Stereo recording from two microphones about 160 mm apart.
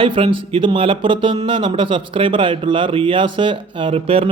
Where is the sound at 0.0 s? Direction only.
30° right (ahead or behind).